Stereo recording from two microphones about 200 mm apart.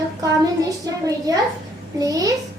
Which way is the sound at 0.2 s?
15° right (ahead or behind).